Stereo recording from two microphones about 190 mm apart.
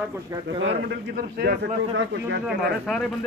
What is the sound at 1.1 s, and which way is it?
A man's voice, 60° right (ahead or behind).